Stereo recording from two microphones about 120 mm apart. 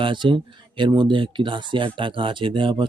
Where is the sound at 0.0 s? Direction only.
45° right (ahead or behind).